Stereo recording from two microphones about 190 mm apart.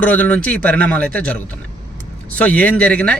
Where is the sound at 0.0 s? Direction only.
10° left (ahead or behind).